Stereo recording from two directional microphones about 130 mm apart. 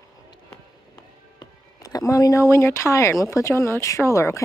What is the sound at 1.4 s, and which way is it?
Speech, 30° left (ahead or behind).